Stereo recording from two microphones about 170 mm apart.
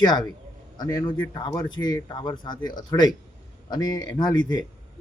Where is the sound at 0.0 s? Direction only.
25° left (ahead or behind).